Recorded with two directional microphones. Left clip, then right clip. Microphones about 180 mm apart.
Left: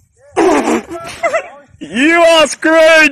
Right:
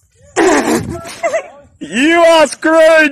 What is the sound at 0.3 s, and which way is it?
Fart, centre (ahead or behind).